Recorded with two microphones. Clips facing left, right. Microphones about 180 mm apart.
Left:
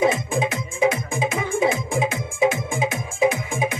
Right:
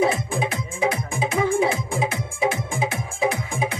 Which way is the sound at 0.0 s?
20° left (ahead or behind).